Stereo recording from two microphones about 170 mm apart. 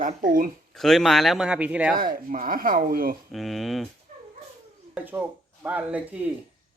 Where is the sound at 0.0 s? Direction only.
50° right (ahead or behind).